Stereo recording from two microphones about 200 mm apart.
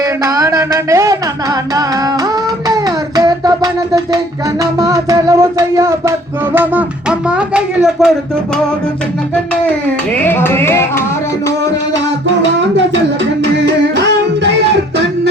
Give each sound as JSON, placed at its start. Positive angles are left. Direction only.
{"t": 0.0, "sound": "a sound", "side_deg": -15}
{"t": 2.6, "sound": "music", "side_deg": -20}
{"t": 10.2, "sound": "music", "side_deg": 10}
{"t": 13.4, "sound": "music", "side_deg": -60}